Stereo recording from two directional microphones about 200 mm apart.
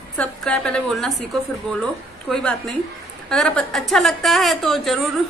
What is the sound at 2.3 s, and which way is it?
Speech, 5° left (ahead or behind).